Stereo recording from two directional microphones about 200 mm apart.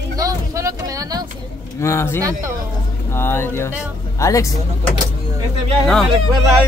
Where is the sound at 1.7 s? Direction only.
15° left (ahead or behind).